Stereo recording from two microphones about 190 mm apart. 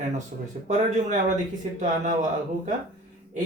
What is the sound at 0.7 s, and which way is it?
Speech, 40° right (ahead or behind).